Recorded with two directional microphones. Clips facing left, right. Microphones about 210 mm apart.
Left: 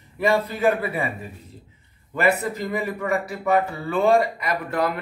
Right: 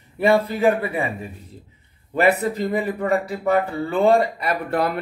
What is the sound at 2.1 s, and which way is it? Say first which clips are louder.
Speech: right 3 dB; 30° right (ahead or behind).